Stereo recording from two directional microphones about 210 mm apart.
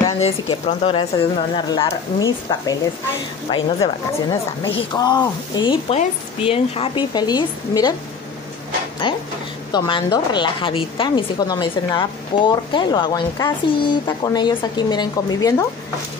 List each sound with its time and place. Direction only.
0.2 s a woman's voice: 25° left (ahead or behind)
9.0 s a woman's voice: 25° left (ahead or behind)